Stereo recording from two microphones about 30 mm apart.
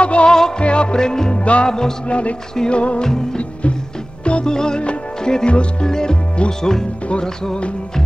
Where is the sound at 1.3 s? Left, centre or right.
Left.